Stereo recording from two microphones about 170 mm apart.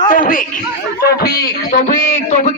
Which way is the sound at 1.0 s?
70° left (ahead or behind).